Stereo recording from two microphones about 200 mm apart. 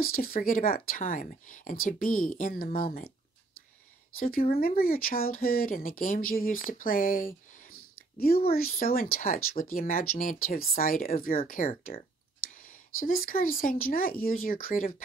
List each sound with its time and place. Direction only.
0.0 s speech: 45° left (ahead or behind)
4.2 s speech: 45° left (ahead or behind)
6.7 s a sound: 45° left (ahead or behind)
8.7 s speech: 45° left (ahead or behind)